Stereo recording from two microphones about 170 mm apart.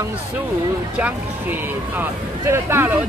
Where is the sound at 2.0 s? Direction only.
15° right (ahead or behind).